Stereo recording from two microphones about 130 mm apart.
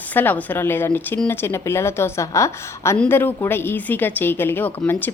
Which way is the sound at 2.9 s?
10° left (ahead or behind).